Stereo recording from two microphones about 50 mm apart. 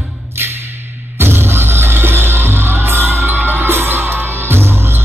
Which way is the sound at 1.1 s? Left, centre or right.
Right.